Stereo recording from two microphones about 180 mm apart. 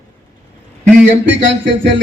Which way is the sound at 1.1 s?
75° right (ahead or behind).